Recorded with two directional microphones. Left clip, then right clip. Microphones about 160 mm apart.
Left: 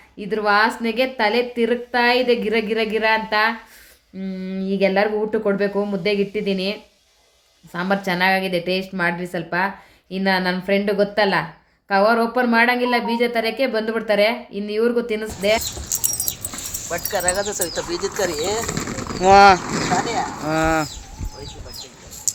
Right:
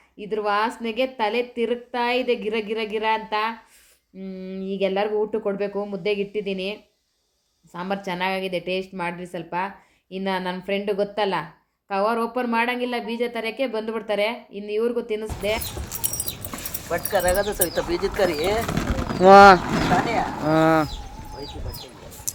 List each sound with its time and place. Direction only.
0.2 s a woman's voice: 10° right (ahead or behind)
15.9 s chicken: 25° right (ahead or behind)
16.9 s speech: 20° right (ahead or behind)
18.6 s bird: 55° right (ahead or behind)
19.2 s speech: 25° right (ahead or behind)
19.6 s speech: 50° right (ahead or behind)
20.0 s a sound: 25° right (ahead or behind)
20.4 s a woman's voice: 15° right (ahead or behind)